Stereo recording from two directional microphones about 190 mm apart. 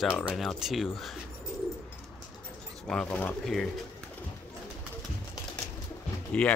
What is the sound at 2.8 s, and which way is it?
Speech, 5° left (ahead or behind).